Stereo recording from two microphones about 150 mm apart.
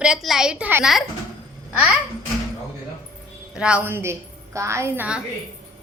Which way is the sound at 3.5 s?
5° right (ahead or behind).